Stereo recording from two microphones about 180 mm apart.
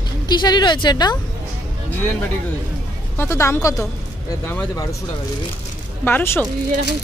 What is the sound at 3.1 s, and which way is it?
Speech, 15° left (ahead or behind).